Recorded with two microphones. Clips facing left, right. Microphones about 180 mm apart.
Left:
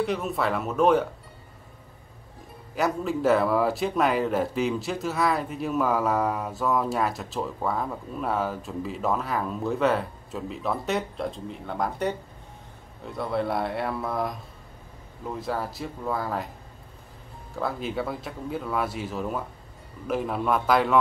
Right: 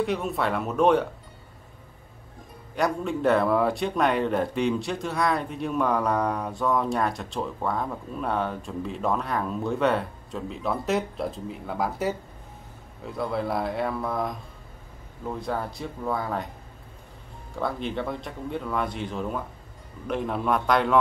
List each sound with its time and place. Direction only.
0.0 s speech: centre (ahead or behind)
2.7 s speech: centre (ahead or behind)
15.3 s speech: centre (ahead or behind)
17.6 s speech: 5° left (ahead or behind)